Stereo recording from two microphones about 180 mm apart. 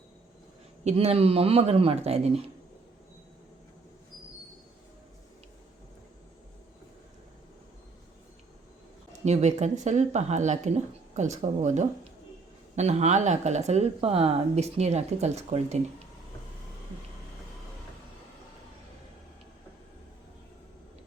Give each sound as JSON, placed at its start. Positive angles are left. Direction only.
{"t": 0.9, "sound": "speech", "side_deg": -35}
{"t": 9.2, "sound": "speech", "side_deg": -40}